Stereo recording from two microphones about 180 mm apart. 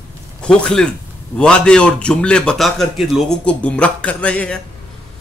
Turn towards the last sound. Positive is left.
turn(degrees=5)  # may be behind; listen again after turning